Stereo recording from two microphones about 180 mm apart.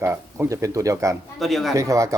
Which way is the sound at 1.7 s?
20° right (ahead or behind).